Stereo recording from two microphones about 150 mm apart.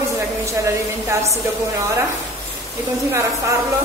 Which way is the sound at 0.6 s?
20° right (ahead or behind).